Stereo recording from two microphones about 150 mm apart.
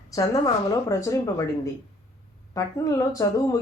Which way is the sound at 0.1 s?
20° left (ahead or behind).